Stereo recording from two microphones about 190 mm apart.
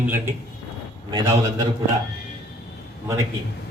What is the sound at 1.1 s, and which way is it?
Speech, 20° right (ahead or behind).